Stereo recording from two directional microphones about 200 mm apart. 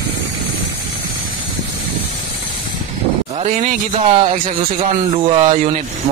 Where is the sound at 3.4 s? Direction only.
40° right (ahead or behind).